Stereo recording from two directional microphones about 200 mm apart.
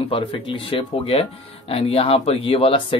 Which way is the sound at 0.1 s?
25° left (ahead or behind).